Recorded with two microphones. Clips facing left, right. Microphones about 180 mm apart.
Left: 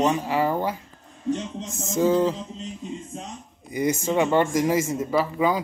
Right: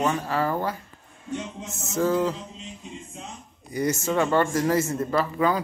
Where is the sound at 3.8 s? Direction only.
15° left (ahead or behind).